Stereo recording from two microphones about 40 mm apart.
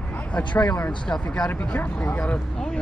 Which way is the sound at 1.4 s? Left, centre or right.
Left.